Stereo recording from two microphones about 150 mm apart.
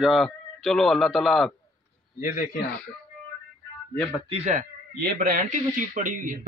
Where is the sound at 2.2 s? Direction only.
55° left (ahead or behind).